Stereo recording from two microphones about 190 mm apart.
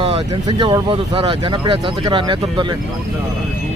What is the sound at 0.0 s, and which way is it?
Speech, 25° right (ahead or behind).